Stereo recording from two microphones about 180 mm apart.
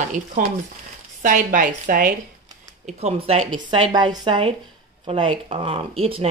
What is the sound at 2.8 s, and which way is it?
Speech, 35° right (ahead or behind).